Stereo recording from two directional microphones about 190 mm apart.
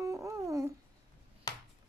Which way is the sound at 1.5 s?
20° left (ahead or behind).